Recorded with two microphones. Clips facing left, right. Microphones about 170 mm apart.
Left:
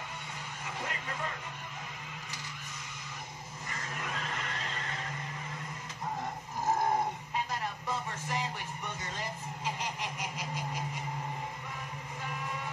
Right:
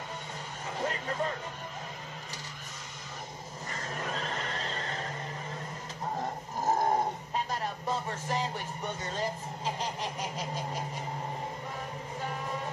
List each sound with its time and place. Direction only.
0.7 s vehicle: 35° right (ahead or behind)
3.7 s neigh: 35° right (ahead or behind)
6.6 s a sound: 35° right (ahead or behind)
12.2 s music: 35° right (ahead or behind)